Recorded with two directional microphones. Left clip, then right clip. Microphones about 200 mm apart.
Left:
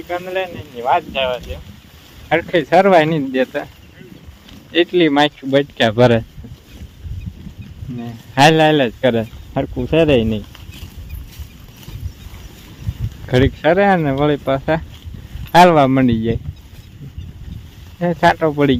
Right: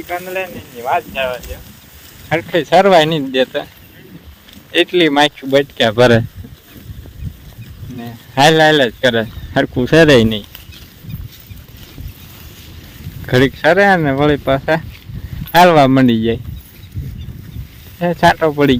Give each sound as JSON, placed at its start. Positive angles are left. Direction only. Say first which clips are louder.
{"t": 0.1, "sound": "speech", "louder": "even", "side_deg": 20}
{"t": 2.6, "sound": "speech", "louder": "right 3 dB", "side_deg": -25}
{"t": 4.7, "sound": "speech", "louder": "right 2 dB", "side_deg": -15}
{"t": 7.9, "sound": "speech", "louder": "right 1 dB", "side_deg": -15}
{"t": 9.6, "sound": "speech", "louder": "right 5 dB", "side_deg": -30}
{"t": 13.2, "sound": "speech", "louder": "right 3 dB", "side_deg": -10}
{"t": 18.0, "sound": "speech", "louder": "right 2 dB", "side_deg": -5}